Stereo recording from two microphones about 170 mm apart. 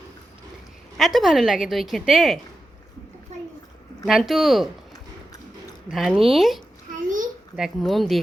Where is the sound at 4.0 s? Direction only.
Centre (ahead or behind).